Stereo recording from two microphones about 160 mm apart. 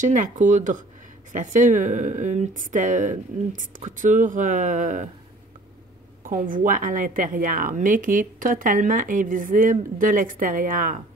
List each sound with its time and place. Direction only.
0.0 s speech: 50° right (ahead or behind)
6.2 s a woman's voice: 60° right (ahead or behind)